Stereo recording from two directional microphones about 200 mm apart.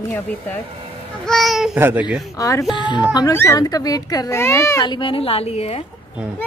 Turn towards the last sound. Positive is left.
turn(degrees=30)  # may be behind; listen again after turning